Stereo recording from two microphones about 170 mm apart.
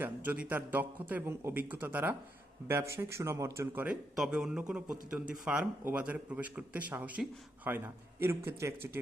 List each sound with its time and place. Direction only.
0.0 s speech: 10° right (ahead or behind)
4.1 s speech: 5° right (ahead or behind)